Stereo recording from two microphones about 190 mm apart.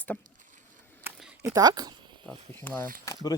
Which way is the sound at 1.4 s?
20° right (ahead or behind).